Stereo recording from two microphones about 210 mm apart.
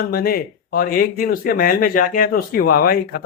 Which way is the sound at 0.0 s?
45° left (ahead or behind).